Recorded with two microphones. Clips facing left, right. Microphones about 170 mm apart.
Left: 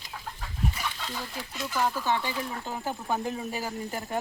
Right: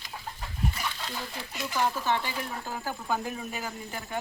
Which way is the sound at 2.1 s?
20° left (ahead or behind).